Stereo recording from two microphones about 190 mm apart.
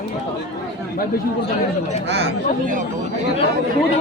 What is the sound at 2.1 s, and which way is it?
Speech, 65° right (ahead or behind).